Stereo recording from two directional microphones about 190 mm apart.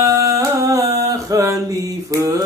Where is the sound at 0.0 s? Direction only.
15° right (ahead or behind).